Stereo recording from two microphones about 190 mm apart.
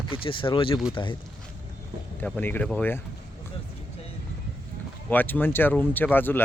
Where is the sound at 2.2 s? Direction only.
10° left (ahead or behind).